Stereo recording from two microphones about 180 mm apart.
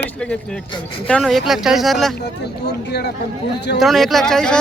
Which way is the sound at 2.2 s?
65° left (ahead or behind).